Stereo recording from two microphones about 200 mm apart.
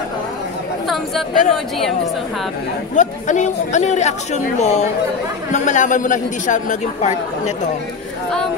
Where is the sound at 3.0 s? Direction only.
35° left (ahead or behind).